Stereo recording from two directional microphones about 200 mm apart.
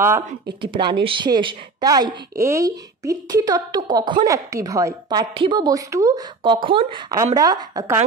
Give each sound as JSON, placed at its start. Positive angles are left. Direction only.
{"t": 0.6, "sound": "a woman's voice", "side_deg": -25}